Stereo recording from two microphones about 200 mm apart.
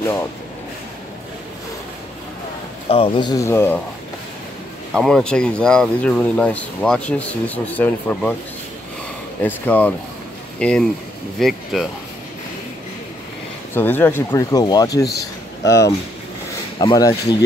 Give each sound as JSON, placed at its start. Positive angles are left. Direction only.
{"t": 0.0, "sound": "speech", "side_deg": 15}
{"t": 2.9, "sound": "speech", "side_deg": 25}
{"t": 4.9, "sound": "speech", "side_deg": 0}
{"t": 9.4, "sound": "speech", "side_deg": 10}
{"t": 13.7, "sound": "speech", "side_deg": 10}